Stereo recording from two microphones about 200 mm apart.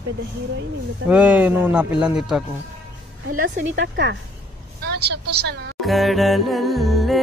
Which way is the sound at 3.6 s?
60° right (ahead or behind).